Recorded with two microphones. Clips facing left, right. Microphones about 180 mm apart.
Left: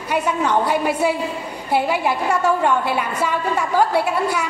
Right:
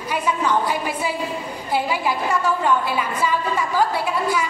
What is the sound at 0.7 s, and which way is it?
A woman's voice, 65° left (ahead or behind).